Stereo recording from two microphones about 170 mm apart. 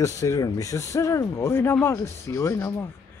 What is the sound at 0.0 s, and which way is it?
Speech, 20° left (ahead or behind).